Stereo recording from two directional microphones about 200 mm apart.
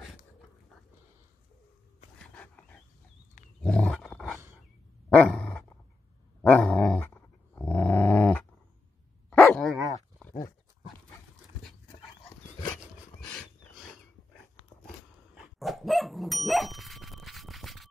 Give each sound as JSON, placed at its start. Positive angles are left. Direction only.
{"t": 2.3, "sound": "dog", "side_deg": 5}
{"t": 3.6, "sound": "roar", "side_deg": 5}
{"t": 5.1, "sound": "dog", "side_deg": 5}
{"t": 13.2, "sound": "dog", "side_deg": 5}